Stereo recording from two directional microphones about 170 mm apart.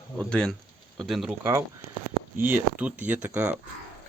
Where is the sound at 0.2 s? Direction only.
5° left (ahead or behind).